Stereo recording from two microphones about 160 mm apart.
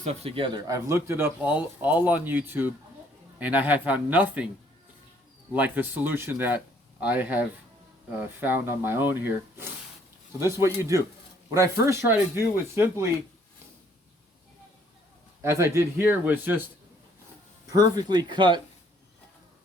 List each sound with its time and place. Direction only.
0.0 s speech: 40° right (ahead or behind); by 4.4 s 10° right (ahead or behind)
5.5 s speech: 10° right (ahead or behind)
15.4 s speech: 15° right (ahead or behind)
17.7 s speech: 25° right (ahead or behind)